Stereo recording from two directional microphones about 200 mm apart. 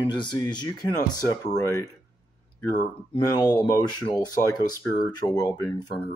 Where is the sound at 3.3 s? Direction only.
15° left (ahead or behind).